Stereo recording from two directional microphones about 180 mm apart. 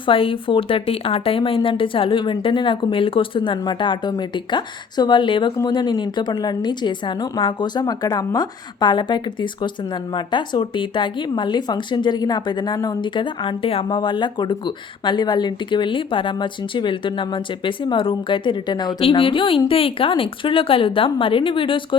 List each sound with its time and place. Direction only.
0.0 s speech: 30° left (ahead or behind)